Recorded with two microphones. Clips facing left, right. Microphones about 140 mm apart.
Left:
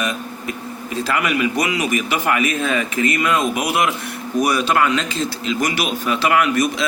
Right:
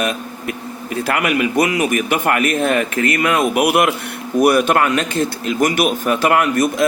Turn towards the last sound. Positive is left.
turn(degrees=-50)  # may be behind; listen again after turning